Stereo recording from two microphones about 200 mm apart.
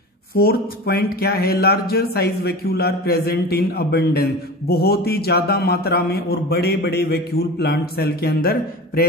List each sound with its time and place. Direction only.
0.4 s speech: 50° left (ahead or behind)